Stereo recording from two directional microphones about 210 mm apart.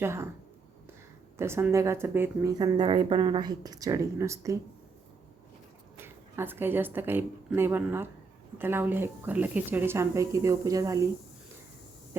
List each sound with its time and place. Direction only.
0.0 s speech: 10° right (ahead or behind)
1.4 s speech: 10° right (ahead or behind)
6.0 s a woman's voice: 10° right (ahead or behind)